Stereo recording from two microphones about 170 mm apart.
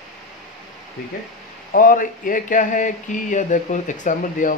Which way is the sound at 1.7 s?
55° left (ahead or behind).